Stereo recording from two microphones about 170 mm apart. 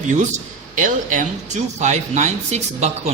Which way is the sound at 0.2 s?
50° right (ahead or behind).